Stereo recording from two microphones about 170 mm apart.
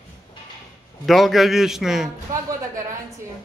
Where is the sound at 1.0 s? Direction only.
Centre (ahead or behind).